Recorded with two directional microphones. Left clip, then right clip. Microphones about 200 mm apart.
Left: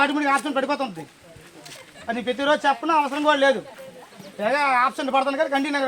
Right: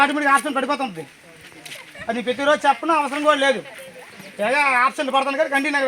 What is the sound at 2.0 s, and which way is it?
Speech, 55° right (ahead or behind).